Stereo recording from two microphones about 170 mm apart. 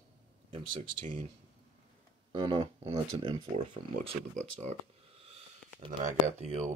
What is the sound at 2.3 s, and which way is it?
Speech, 30° right (ahead or behind).